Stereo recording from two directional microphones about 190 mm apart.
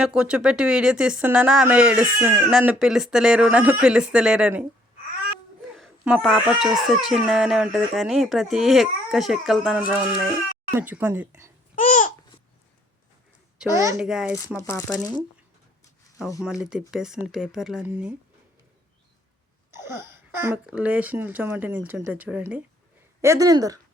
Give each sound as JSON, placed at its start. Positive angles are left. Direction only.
{"t": 0.0, "sound": "speech", "side_deg": -5}
{"t": 5.7, "sound": "speech", "side_deg": -5}
{"t": 11.8, "sound": "babbling", "side_deg": 40}
{"t": 13.9, "sound": "speech", "side_deg": 0}
{"t": 14.7, "sound": "speech", "side_deg": 15}
{"t": 16.6, "sound": "speech", "side_deg": -5}
{"t": 19.7, "sound": "speech", "side_deg": -15}